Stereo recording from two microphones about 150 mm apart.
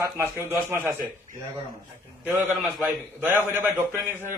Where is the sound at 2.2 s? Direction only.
15° right (ahead or behind).